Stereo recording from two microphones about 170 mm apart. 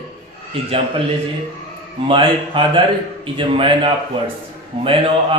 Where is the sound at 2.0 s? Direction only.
30° right (ahead or behind).